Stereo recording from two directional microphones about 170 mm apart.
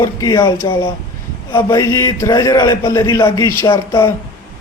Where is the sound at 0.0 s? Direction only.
20° left (ahead or behind).